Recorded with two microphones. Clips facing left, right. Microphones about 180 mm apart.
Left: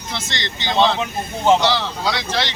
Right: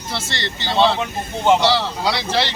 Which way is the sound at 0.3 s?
15° left (ahead or behind).